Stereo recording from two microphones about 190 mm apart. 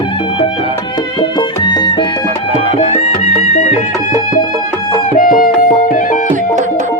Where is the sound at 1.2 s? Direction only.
25° left (ahead or behind).